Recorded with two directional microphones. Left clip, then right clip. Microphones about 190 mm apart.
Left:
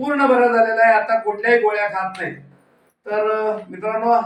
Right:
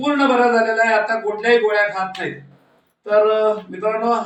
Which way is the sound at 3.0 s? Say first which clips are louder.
Right 5 dB; 15° right (ahead or behind).